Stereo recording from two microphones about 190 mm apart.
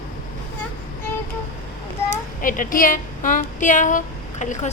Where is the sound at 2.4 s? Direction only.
45° left (ahead or behind).